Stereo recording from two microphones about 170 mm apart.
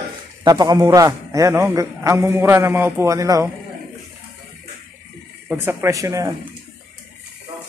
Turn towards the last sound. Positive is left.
turn(degrees=-20)  # may be behind; listen again after turning